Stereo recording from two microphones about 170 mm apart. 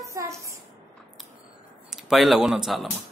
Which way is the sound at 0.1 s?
20° right (ahead or behind).